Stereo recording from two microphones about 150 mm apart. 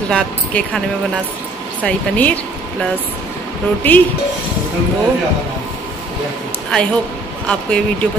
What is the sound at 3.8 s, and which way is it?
Speech, 10° left (ahead or behind).